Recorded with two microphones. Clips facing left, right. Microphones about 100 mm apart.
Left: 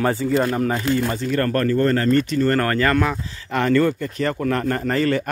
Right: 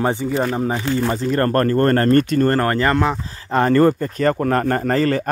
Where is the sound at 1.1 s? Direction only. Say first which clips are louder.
Right 3 dB; 35° right (ahead or behind).